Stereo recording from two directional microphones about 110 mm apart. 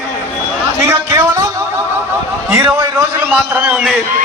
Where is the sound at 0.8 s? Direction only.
20° right (ahead or behind).